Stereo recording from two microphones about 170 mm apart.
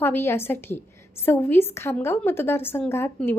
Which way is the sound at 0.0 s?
15° left (ahead or behind).